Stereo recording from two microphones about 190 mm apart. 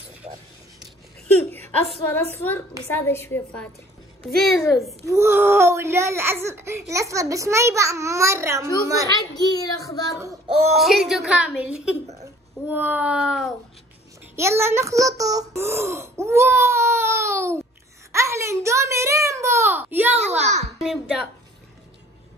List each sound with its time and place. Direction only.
1.2 s a sound: 10° left (ahead or behind)
2.3 s a woman's voice: 10° left (ahead or behind)
4.4 s a woman's voice: centre (ahead or behind)
5.0 s a child's voice: 15° right (ahead or behind)
9.1 s a child's voice: 20° left (ahead or behind)
10.8 s a woman's voice: centre (ahead or behind)
14.3 s a child's voice: 15° right (ahead or behind)
20.2 s a child's voice: 35° right (ahead or behind)
20.8 s a woman's voice: centre (ahead or behind)